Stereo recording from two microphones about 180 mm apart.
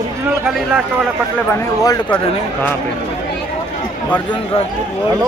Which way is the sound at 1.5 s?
20° left (ahead or behind).